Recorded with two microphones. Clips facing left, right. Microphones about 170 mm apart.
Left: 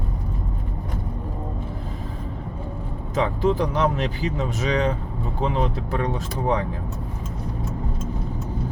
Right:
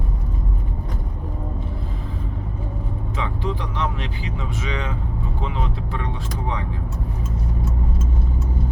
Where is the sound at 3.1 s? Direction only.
40° left (ahead or behind).